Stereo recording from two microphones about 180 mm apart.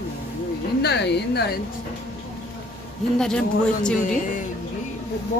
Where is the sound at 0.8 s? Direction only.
70° left (ahead or behind).